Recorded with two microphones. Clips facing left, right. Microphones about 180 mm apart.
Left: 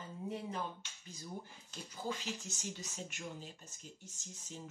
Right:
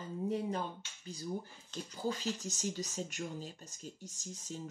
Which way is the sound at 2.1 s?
40° right (ahead or behind).